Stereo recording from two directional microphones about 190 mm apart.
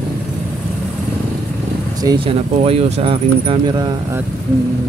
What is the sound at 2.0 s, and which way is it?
Speech, 25° right (ahead or behind).